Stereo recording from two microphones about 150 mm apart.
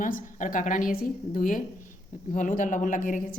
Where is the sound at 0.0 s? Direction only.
60° left (ahead or behind).